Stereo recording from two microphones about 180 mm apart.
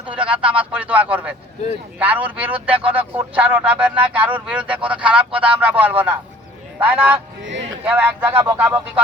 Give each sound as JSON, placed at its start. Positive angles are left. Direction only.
{"t": 0.1, "sound": "speech", "side_deg": -5}
{"t": 7.4, "sound": "speech", "side_deg": -85}
{"t": 7.9, "sound": "speech", "side_deg": -10}